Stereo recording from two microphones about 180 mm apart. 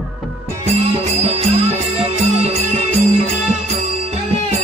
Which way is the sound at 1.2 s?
35° right (ahead or behind).